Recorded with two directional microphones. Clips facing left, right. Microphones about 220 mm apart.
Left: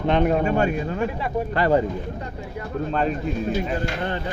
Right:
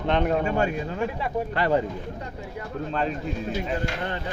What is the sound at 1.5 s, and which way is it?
Speech, 40° left (ahead or behind).